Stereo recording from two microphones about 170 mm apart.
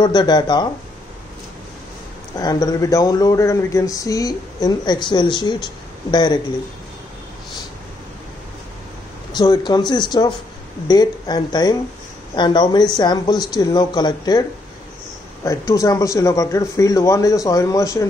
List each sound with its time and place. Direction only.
0.0 s speech: 25° left (ahead or behind)
2.3 s speech: 20° left (ahead or behind)
9.3 s speech: 25° left (ahead or behind)
15.7 s speech: 20° left (ahead or behind)